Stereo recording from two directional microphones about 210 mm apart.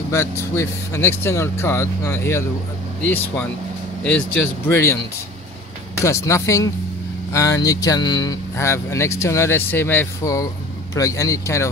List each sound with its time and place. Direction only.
0.1 s speech: 15° left (ahead or behind)
4.6 s speech: 10° left (ahead or behind)
5.9 s speech: 15° left (ahead or behind)